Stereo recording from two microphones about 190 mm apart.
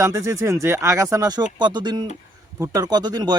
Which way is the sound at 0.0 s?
15° right (ahead or behind).